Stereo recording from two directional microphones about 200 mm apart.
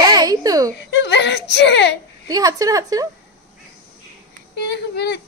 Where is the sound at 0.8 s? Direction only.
60° left (ahead or behind).